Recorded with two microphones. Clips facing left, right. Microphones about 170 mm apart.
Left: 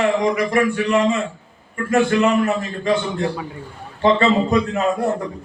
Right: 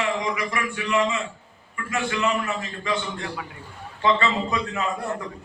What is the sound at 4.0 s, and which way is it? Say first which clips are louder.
Speech: left 7 dB; 40° left (ahead or behind).